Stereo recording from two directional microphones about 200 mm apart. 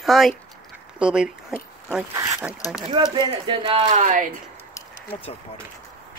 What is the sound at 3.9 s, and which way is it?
Speech, 40° right (ahead or behind).